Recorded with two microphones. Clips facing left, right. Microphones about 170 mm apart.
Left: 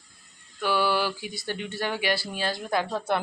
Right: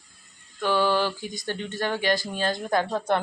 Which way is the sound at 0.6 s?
10° left (ahead or behind).